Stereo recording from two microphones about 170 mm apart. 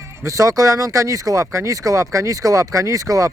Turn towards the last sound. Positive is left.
turn(degrees=-20)  # may be behind; listen again after turning